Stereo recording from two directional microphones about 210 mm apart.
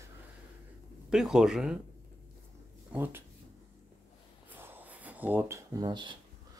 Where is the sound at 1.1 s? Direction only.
5° right (ahead or behind).